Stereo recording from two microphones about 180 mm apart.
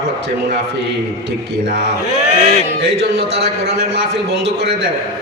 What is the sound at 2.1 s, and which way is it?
Speech, 40° right (ahead or behind).